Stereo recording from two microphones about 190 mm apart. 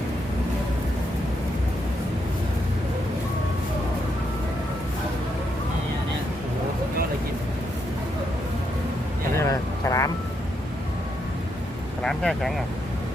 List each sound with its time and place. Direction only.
9.3 s vehicle: 15° left (ahead or behind)
12.0 s speech: centre (ahead or behind)